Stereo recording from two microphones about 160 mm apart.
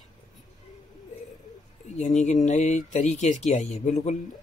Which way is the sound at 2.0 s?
50° left (ahead or behind).